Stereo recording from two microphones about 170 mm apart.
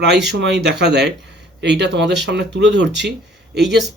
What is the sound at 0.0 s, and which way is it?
Speech, 90° right.